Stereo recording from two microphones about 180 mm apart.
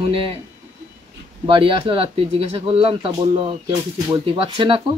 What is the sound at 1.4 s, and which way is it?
Speech, 30° right (ahead or behind).